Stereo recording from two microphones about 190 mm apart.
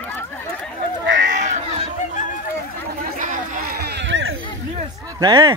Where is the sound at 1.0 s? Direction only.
75° right (ahead or behind).